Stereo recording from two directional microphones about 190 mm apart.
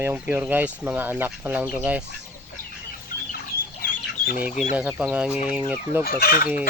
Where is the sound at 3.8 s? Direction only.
50° left (ahead or behind).